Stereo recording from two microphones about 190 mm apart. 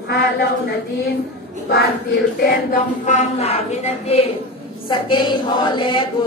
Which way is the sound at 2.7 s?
40° left (ahead or behind).